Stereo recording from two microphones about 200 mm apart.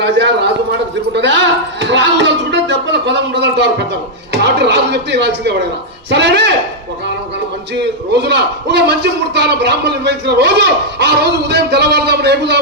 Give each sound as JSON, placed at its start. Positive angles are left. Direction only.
{"t": 1.1, "sound": "a man's voice", "side_deg": -60}
{"t": 8.1, "sound": "a man's voice", "side_deg": -60}